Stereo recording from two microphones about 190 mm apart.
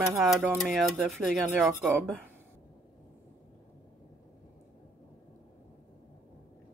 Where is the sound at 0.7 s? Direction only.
Centre (ahead or behind).